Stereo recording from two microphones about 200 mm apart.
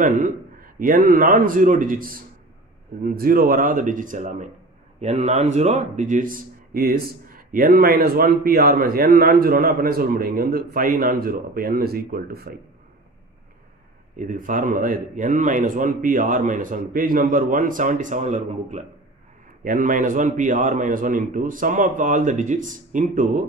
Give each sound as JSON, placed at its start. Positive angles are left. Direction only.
{"t": 0.0, "sound": "speech", "side_deg": -40}
{"t": 14.1, "sound": "a man's voice", "side_deg": -40}